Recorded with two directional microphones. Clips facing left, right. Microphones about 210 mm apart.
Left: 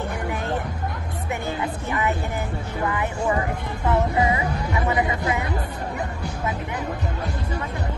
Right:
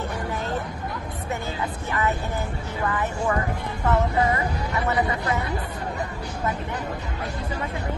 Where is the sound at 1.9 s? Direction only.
15° left (ahead or behind).